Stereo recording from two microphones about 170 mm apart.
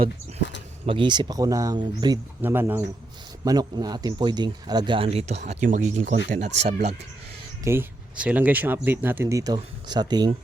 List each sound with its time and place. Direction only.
0.9 s speech: 30° right (ahead or behind)
2.4 s speech: 10° right (ahead or behind); by 6.7 s 40° right (ahead or behind)
7.6 s speech: 15° right (ahead or behind)